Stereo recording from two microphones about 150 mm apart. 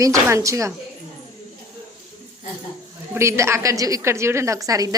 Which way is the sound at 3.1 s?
20° right (ahead or behind).